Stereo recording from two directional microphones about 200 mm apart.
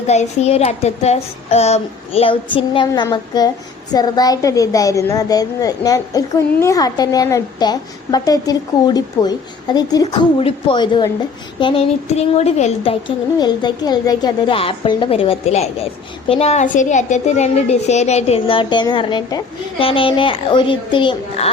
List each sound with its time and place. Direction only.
0.1 s a woman's voice: 35° left (ahead or behind)